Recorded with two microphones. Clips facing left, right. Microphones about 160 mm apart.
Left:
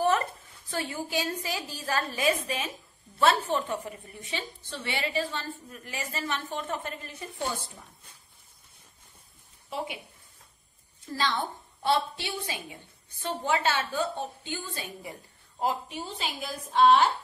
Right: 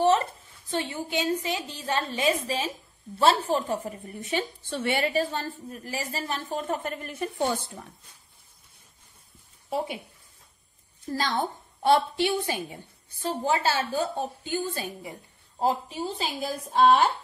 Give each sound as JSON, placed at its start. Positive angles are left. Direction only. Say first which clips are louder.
{"t": 0.7, "sound": "a woman's voice", "louder": "right 3 dB", "side_deg": -25}
{"t": 11.1, "sound": "a woman's voice", "louder": "right 2 dB", "side_deg": -40}
{"t": 13.2, "sound": "a woman's voice", "louder": "right 2 dB", "side_deg": -35}